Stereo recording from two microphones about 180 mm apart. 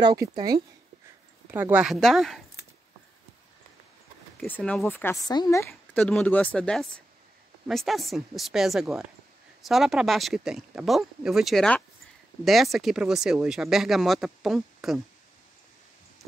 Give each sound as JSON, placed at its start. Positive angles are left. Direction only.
{"t": 0.0, "sound": "speech", "side_deg": -20}
{"t": 1.5, "sound": "speech", "side_deg": -10}
{"t": 4.4, "sound": "speech", "side_deg": 10}
{"t": 5.7, "sound": "speech", "side_deg": 5}